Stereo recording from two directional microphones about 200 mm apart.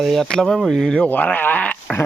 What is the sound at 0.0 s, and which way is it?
Speech, centre (ahead or behind).